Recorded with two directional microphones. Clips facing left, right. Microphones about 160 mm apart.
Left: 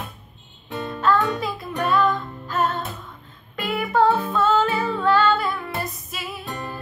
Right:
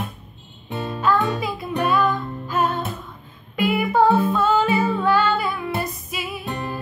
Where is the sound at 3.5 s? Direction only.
5° right (ahead or behind).